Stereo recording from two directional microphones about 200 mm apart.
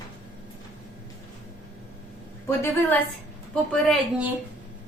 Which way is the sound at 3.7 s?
5° right (ahead or behind).